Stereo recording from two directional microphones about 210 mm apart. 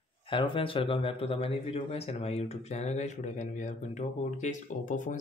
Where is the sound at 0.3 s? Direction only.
25° left (ahead or behind).